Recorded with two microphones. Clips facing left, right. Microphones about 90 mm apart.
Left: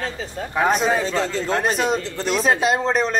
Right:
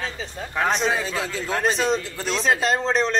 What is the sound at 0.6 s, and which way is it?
A man's voice, 5° left (ahead or behind).